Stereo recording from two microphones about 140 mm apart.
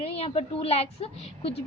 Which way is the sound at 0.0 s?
45° left (ahead or behind).